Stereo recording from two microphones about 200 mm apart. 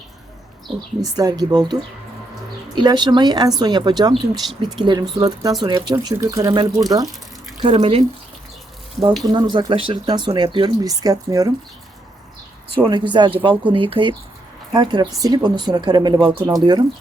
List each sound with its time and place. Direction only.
1.0 s speech: 20° right (ahead or behind)
2.7 s speech: 20° right (ahead or behind)
9.2 s speech: 20° right (ahead or behind)
12.8 s speech: 20° right (ahead or behind)